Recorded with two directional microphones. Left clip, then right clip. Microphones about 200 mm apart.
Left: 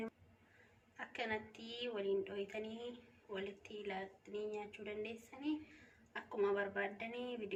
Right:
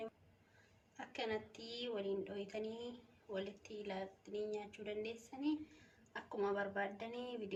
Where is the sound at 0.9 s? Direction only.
45° right (ahead or behind).